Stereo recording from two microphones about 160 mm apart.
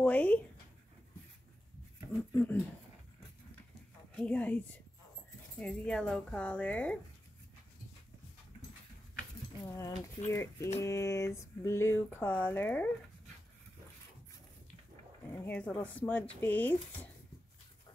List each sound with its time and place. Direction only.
0.0 s speech: 10° left (ahead or behind)
2.3 s speech: 10° left (ahead or behind)
4.1 s a woman's voice: 10° left (ahead or behind)
9.8 s speech: 20° left (ahead or behind)
15.3 s speech: 10° left (ahead or behind)